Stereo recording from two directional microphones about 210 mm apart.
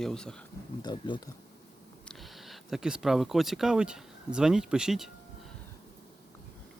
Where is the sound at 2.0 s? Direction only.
Centre (ahead or behind).